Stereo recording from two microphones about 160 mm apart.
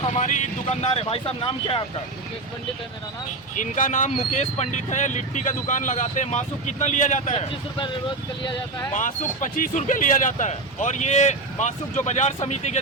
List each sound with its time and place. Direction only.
0.0 s speech: 45° left (ahead or behind)
3.5 s speech: 55° left (ahead or behind)
8.9 s speech: 55° left (ahead or behind)